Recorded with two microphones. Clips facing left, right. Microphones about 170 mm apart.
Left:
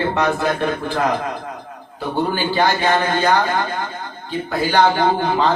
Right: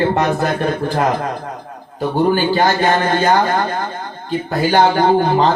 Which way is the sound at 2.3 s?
40° right (ahead or behind).